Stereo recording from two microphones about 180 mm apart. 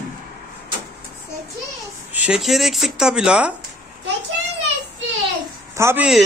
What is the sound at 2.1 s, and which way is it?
Speech, 5° right (ahead or behind).